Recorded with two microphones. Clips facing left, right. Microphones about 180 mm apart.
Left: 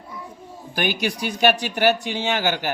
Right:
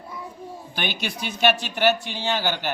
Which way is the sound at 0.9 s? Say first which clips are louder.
Left 6 dB; 10° left (ahead or behind).